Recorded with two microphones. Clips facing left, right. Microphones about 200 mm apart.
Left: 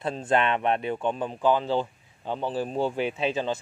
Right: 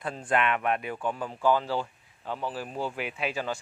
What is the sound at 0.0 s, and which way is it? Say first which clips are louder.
Speech: left 3 dB; 25° left (ahead or behind).